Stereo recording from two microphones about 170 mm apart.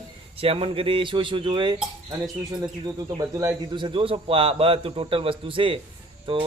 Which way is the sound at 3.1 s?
20° right (ahead or behind).